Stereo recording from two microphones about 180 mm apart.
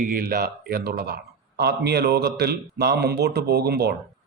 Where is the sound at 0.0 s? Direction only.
50° right (ahead or behind).